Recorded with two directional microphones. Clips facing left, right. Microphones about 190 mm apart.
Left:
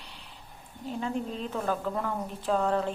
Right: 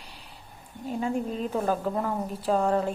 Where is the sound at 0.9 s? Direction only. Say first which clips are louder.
Right 3 dB; 10° right (ahead or behind).